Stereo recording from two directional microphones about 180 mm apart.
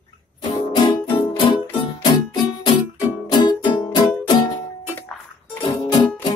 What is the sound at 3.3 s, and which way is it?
Music, 25° left (ahead or behind).